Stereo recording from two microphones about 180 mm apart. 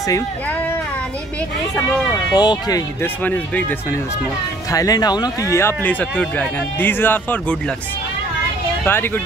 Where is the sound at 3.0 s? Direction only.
10° left (ahead or behind).